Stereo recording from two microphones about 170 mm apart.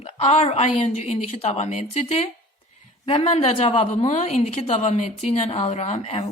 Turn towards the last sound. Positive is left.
turn(degrees=40)  # may be behind; listen again after turning